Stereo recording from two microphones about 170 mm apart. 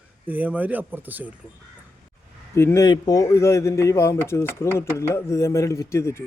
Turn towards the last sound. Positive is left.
turn(degrees=15)  # may be behind; listen again after turning